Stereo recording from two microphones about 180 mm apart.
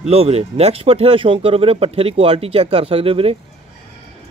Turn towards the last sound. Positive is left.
turn(degrees=-30)  # may be behind; listen again after turning